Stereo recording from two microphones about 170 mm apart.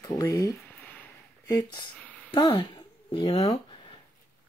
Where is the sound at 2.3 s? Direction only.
30° left (ahead or behind).